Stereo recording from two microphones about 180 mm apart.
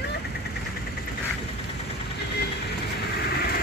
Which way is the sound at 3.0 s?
60° left (ahead or behind).